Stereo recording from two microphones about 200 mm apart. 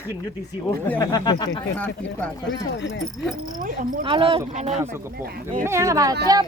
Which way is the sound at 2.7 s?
60° left (ahead or behind).